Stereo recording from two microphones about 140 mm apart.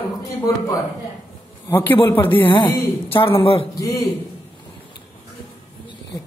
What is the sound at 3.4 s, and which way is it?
Speech, 40° left (ahead or behind).